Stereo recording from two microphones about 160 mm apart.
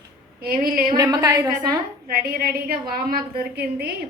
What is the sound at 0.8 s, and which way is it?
Speech, 25° right (ahead or behind).